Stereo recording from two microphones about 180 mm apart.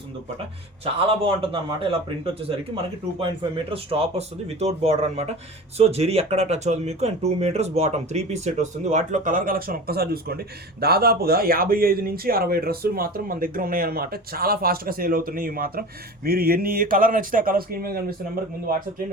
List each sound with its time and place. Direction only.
1.2 s speech: 30° right (ahead or behind)
3.7 s speech: 30° right (ahead or behind); by 18.0 s 55° right (ahead or behind)